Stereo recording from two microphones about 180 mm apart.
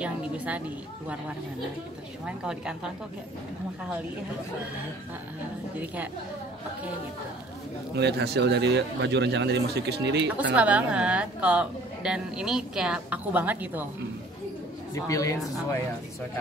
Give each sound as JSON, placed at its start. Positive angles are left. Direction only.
{"t": 0.0, "sound": "a woman's voice", "side_deg": -5}
{"t": 2.2, "sound": "a woman's voice", "side_deg": -5}
{"t": 7.9, "sound": "speech", "side_deg": -70}
{"t": 10.5, "sound": "a woman's voice", "side_deg": -5}
{"t": 15.0, "sound": "speech", "side_deg": 20}